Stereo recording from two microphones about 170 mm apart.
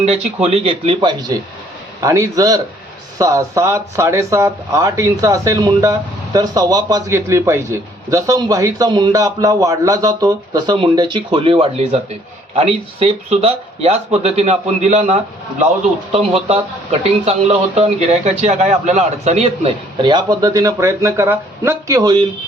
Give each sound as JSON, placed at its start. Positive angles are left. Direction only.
{"t": 0.4, "sound": "speech", "side_deg": -35}
{"t": 2.0, "sound": "speech", "side_deg": -20}